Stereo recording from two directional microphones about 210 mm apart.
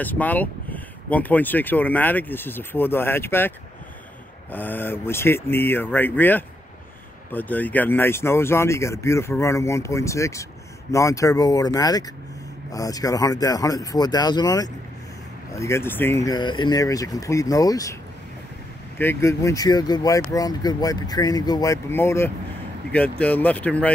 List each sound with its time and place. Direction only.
0.0 s speech: 10° left (ahead or behind)
18.9 s speech: 10° left (ahead or behind)